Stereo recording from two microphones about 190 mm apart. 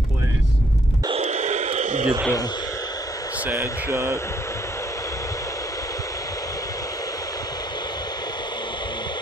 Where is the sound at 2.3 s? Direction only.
20° left (ahead or behind).